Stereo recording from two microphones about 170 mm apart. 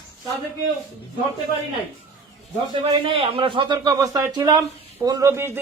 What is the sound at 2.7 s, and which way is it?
A man's voice, 30° right (ahead or behind).